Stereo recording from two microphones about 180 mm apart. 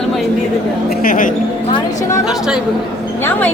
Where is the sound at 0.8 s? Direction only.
55° left (ahead or behind).